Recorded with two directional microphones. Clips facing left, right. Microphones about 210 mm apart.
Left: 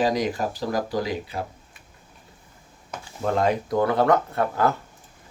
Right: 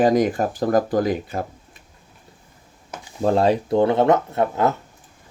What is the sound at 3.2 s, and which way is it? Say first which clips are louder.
Speech: right 5 dB; 30° right (ahead or behind).